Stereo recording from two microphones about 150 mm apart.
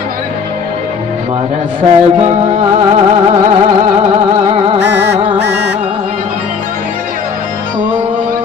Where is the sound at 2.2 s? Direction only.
45° right (ahead or behind).